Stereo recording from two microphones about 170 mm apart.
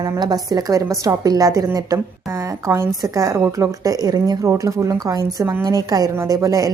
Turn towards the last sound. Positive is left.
turn(degrees=-20)  # may be behind; listen again after turning